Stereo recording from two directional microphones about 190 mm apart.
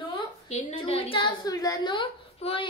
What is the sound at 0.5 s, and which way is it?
A woman's voice, 30° left (ahead or behind).